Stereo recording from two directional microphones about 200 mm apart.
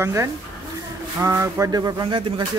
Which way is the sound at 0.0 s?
15° right (ahead or behind).